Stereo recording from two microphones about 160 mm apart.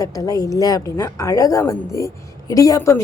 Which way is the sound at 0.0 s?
20° left (ahead or behind).